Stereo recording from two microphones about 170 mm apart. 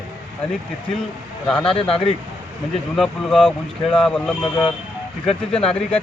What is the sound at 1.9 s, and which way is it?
Speech, 35° left (ahead or behind).